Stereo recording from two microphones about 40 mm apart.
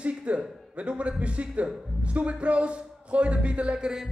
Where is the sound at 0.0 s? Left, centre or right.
Right.